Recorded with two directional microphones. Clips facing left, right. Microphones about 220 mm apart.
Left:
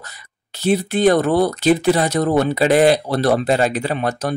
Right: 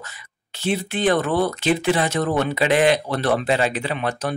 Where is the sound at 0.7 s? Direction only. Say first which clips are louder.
Left 6 dB; 40° left (ahead or behind).